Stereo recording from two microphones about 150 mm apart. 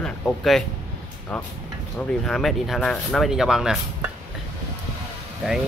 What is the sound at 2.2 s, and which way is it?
Speech, centre (ahead or behind).